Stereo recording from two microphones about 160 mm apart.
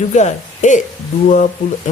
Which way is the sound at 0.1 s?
50° left (ahead or behind).